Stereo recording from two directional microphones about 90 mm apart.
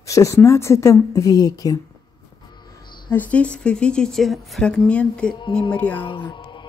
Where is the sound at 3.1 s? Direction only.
15° left (ahead or behind).